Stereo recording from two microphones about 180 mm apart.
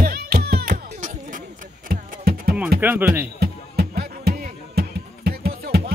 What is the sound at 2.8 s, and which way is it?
Speech, 10° right (ahead or behind).